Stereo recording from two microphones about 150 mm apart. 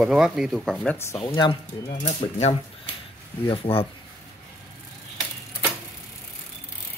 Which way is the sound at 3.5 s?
35° left (ahead or behind).